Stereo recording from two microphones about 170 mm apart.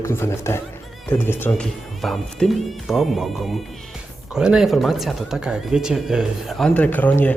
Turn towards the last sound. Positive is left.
turn(degrees=10)  # may be behind; listen again after turning